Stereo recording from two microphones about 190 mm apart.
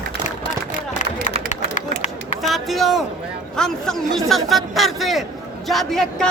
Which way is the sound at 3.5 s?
5° left (ahead or behind).